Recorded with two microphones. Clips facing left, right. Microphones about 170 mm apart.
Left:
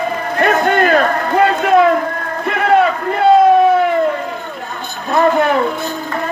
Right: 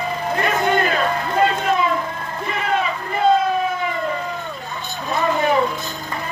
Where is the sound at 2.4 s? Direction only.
65° left (ahead or behind).